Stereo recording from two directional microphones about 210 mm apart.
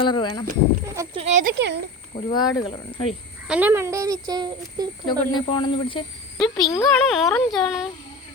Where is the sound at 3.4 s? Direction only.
5° right (ahead or behind).